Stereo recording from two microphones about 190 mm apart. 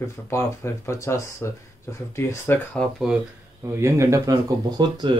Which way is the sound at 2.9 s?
5° right (ahead or behind).